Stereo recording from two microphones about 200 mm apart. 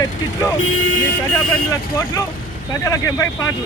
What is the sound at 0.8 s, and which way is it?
Speech, 70° left (ahead or behind).